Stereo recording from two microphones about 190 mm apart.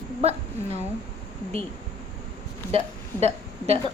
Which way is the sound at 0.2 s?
35° right (ahead or behind).